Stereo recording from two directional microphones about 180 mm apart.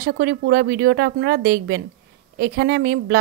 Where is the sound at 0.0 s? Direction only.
55° right (ahead or behind).